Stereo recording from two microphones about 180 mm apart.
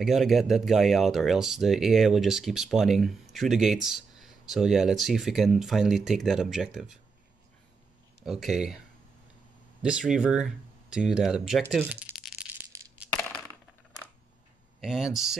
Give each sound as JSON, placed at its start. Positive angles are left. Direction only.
{"t": 0.0, "sound": "speech", "side_deg": 0}
{"t": 8.2, "sound": "speech", "side_deg": 0}
{"t": 9.8, "sound": "speech", "side_deg": -5}
{"t": 11.8, "sound": "a sound", "side_deg": -5}
{"t": 12.7, "sound": "coin", "side_deg": -15}
{"t": 14.8, "sound": "speech", "side_deg": 0}